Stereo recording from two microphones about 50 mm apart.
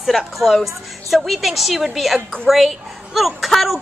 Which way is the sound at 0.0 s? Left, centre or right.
Centre.